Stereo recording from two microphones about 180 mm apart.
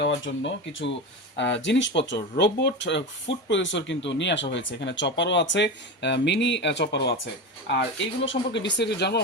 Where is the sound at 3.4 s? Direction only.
90° left.